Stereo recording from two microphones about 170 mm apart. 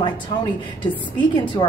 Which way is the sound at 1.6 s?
25° left (ahead or behind).